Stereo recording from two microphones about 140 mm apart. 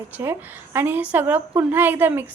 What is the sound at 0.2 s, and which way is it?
A woman's voice, 15° right (ahead or behind).